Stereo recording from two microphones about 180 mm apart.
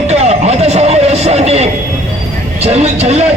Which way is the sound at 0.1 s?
35° right (ahead or behind).